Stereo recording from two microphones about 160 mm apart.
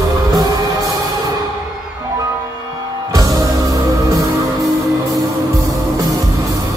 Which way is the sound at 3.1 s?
20° right (ahead or behind).